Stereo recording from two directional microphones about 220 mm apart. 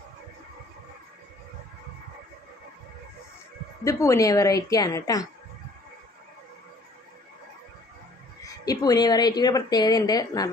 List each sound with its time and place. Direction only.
3.8 s a woman's voice: 15° left (ahead or behind)
8.6 s a woman's voice: 15° left (ahead or behind)